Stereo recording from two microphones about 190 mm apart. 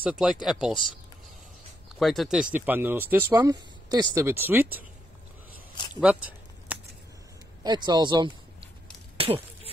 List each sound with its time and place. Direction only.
0.0 s speech: 5° right (ahead or behind)
2.0 s speech: centre (ahead or behind)
6.7 s scissors: 5° right (ahead or behind)
7.6 s speech: 20° right (ahead or behind)
9.1 s a sound: 30° right (ahead or behind)